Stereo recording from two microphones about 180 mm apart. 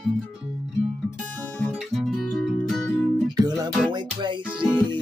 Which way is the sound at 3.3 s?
20° right (ahead or behind).